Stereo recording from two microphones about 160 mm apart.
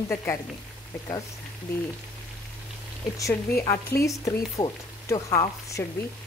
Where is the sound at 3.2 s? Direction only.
15° left (ahead or behind).